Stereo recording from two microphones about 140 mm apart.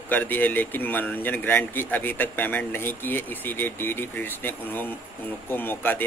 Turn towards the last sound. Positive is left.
turn(degrees=15)  # may be behind; listen again after turning